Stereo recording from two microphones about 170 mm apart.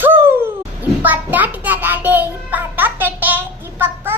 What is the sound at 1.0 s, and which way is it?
Music, 10° right (ahead or behind).